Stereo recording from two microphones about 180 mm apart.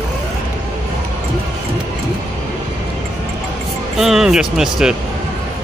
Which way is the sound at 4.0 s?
Centre (ahead or behind).